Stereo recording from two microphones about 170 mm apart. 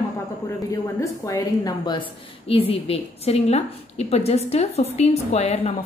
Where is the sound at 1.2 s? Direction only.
20° left (ahead or behind).